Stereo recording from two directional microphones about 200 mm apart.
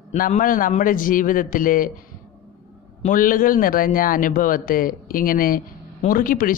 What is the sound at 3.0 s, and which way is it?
A man's voice, 40° left (ahead or behind).